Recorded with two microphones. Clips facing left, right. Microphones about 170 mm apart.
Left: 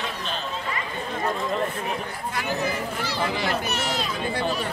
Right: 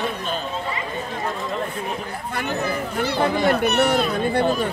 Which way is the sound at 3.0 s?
55° right (ahead or behind).